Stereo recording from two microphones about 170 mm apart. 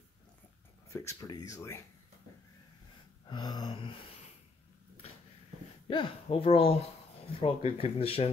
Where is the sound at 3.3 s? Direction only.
25° left (ahead or behind).